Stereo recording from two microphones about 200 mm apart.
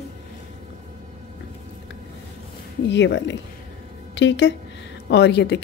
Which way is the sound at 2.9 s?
60° left (ahead or behind).